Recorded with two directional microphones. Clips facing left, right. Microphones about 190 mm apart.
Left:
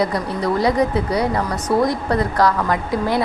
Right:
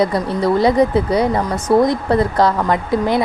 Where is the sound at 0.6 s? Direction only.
25° right (ahead or behind).